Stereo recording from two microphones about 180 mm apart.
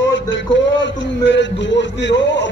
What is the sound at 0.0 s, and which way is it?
A man's voice, 90° left.